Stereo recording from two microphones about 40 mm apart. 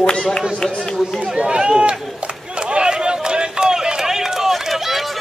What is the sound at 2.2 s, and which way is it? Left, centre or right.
Run, right.